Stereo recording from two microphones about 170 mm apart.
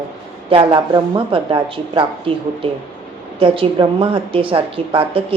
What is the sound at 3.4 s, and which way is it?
A woman's voice, 30° right (ahead or behind).